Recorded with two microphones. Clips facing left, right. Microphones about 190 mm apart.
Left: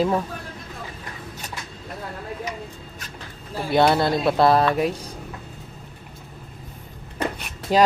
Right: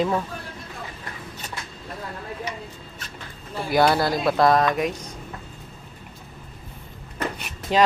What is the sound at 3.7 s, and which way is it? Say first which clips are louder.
Speech: left 1 dB; 25° left (ahead or behind).